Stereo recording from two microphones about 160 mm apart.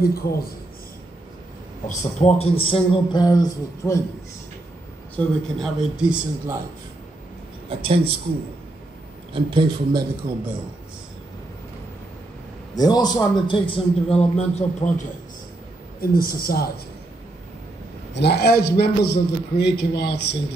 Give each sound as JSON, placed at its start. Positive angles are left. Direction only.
{"t": 0.1, "sound": "a man's voice", "side_deg": 70}
{"t": 1.9, "sound": "a man's voice", "side_deg": 45}
{"t": 5.1, "sound": "speech", "side_deg": 0}
{"t": 7.8, "sound": "a man's voice", "side_deg": -35}
{"t": 9.3, "sound": "a man's voice", "side_deg": -30}
{"t": 12.7, "sound": "a man's voice", "side_deg": 25}
{"t": 16.0, "sound": "a man's voice", "side_deg": 70}
{"t": 18.1, "sound": "a man's voice", "side_deg": 90}